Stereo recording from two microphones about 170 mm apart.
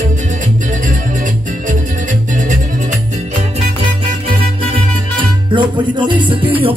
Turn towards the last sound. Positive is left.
turn(degrees=-30)  # may be behind; listen again after turning